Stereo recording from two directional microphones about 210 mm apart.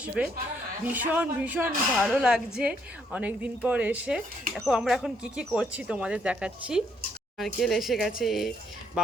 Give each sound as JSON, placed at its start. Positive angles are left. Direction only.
{"t": 0.2, "sound": "speech", "side_deg": -5}